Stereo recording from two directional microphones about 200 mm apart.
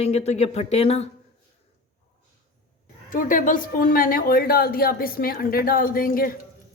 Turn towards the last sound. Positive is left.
turn(degrees=45)  # may be behind; listen again after turning